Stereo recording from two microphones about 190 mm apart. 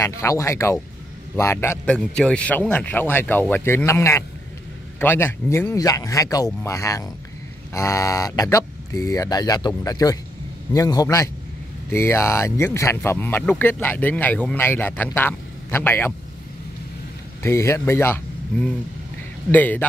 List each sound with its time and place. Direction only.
0.0 s speech: 15° left (ahead or behind)
17.4 s speech: 15° left (ahead or behind)